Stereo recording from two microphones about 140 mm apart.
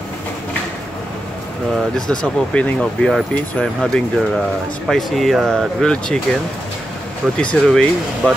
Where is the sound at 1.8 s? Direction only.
5° left (ahead or behind).